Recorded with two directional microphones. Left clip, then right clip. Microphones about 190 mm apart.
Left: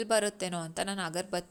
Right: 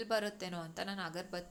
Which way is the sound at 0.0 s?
40° left (ahead or behind).